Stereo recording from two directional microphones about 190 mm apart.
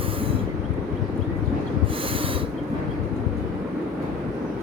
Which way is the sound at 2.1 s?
30° right (ahead or behind).